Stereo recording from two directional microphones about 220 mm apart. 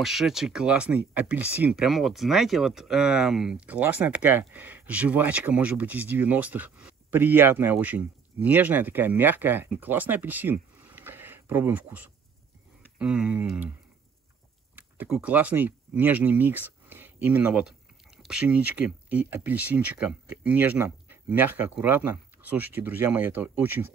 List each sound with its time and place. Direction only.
0.0 s speech: centre (ahead or behind)
14.8 s speech: 10° right (ahead or behind)